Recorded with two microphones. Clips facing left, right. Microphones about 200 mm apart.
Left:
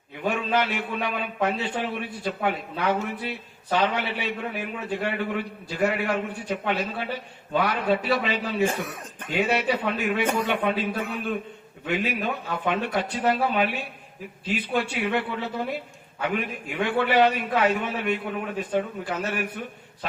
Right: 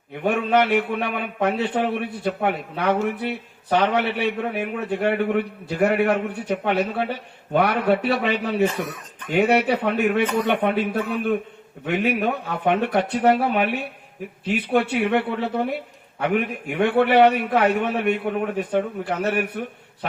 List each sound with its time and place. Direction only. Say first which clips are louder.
0.2 s a man's voice: right 5 dB; 60° right (ahead or behind)